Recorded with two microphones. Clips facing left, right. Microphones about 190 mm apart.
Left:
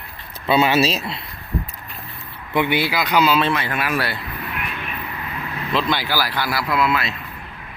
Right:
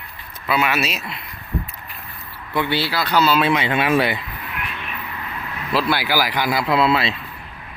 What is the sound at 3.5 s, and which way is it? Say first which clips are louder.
Speech: right 5 dB; 25° right (ahead or behind).